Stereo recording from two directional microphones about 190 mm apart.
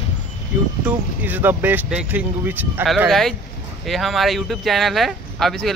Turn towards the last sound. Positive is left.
turn(degrees=0)  # may be behind; listen again after turning